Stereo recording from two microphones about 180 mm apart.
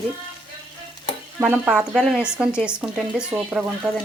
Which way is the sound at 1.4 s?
5° right (ahead or behind).